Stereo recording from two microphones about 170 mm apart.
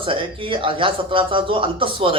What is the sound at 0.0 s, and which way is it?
A man's voice, 30° right (ahead or behind).